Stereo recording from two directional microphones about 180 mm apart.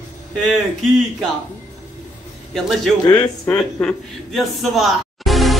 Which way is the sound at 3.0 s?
25° left (ahead or behind).